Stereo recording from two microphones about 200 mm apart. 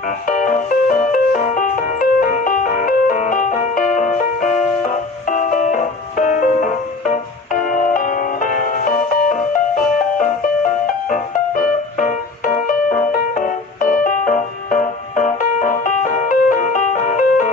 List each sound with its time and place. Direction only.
0.3 s music: 40° left (ahead or behind)
11.1 s music: 40° left (ahead or behind)